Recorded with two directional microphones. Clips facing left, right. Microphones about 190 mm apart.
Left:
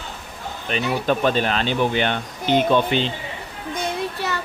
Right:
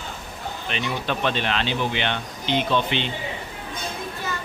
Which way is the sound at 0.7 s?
40° left (ahead or behind).